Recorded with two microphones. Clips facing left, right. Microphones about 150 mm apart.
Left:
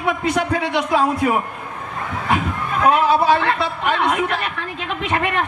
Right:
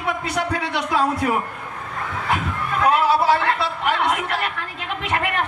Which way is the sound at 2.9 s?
20° left (ahead or behind).